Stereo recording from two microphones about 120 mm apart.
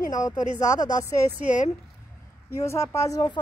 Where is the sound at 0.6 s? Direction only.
25° left (ahead or behind).